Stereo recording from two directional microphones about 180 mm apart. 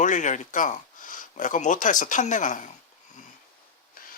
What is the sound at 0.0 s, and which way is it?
Speech, 45° left (ahead or behind).